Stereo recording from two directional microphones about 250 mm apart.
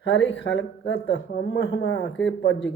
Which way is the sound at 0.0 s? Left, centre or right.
Left.